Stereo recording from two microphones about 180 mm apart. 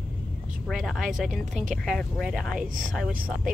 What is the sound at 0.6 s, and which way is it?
Speech, centre (ahead or behind).